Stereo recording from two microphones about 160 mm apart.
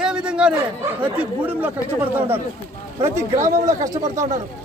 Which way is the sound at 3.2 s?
20° right (ahead or behind).